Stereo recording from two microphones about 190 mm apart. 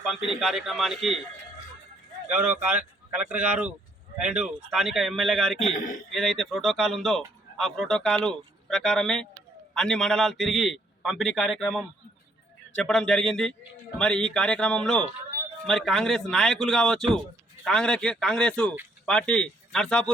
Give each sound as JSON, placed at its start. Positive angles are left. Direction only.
{"t": 0.0, "sound": "speech", "side_deg": -5}
{"t": 3.2, "sound": "speech", "side_deg": -5}
{"t": 5.6, "sound": "a man's voice", "side_deg": 40}
{"t": 6.1, "sound": "speech", "side_deg": 0}